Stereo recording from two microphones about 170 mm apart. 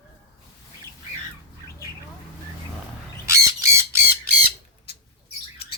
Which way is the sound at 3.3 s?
15° right (ahead or behind).